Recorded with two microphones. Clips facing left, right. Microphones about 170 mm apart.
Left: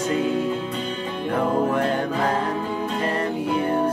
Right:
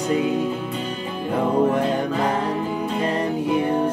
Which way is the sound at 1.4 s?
15° right (ahead or behind).